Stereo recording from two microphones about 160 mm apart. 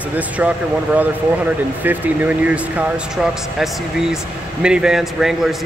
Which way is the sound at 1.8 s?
10° right (ahead or behind).